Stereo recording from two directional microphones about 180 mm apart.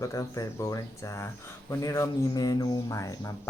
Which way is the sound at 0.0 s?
15° left (ahead or behind).